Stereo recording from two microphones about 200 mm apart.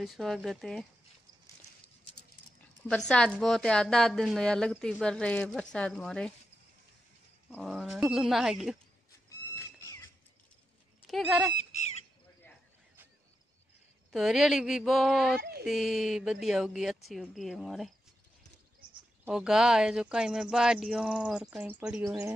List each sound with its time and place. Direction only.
0.0 s speech: centre (ahead or behind)
2.9 s speech: 5° left (ahead or behind)
7.5 s speech: centre (ahead or behind)
11.1 s speech: centre (ahead or behind)
14.1 s speech: centre (ahead or behind)
18.8 s a sound: 25° right (ahead or behind)
19.2 s speech: 5° right (ahead or behind)